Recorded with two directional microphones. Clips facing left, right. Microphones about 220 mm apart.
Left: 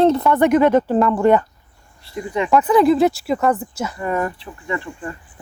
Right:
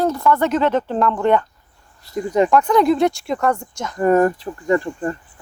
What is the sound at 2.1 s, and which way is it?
Speech, 40° right (ahead or behind).